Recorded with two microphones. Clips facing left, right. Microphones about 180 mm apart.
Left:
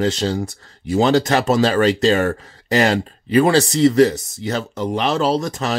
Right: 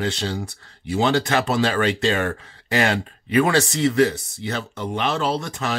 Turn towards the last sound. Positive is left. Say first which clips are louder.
# left 5 dB
turn(degrees=40)  # may be behind; listen again after turning